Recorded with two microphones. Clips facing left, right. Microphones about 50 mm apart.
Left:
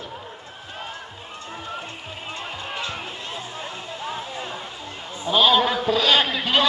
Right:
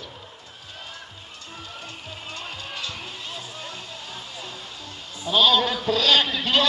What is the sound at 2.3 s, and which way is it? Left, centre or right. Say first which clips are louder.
Music: left 4 dB; left.